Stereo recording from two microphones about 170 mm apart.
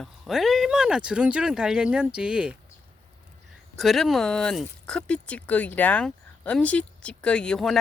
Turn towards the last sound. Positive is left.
turn(degrees=5)  # may be behind; listen again after turning